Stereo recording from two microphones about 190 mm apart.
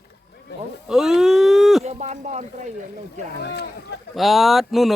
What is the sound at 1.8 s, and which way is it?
Speech, 35° right (ahead or behind).